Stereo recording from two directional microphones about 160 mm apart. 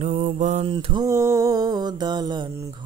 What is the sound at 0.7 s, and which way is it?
Mantra, 35° right (ahead or behind).